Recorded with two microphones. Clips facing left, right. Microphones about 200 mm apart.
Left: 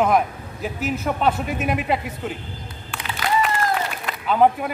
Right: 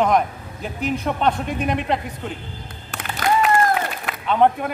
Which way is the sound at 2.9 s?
50° right (ahead or behind).